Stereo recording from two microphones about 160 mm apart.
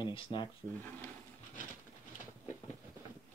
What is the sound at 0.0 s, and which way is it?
Speech, 30° left (ahead or behind).